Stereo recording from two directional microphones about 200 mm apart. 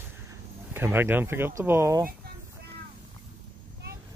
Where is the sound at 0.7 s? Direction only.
10° right (ahead or behind).